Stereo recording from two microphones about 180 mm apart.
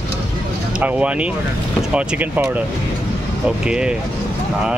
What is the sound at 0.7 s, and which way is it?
Speech, 5° right (ahead or behind).